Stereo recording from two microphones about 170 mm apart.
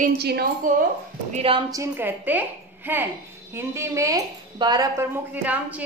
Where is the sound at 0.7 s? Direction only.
50° right (ahead or behind).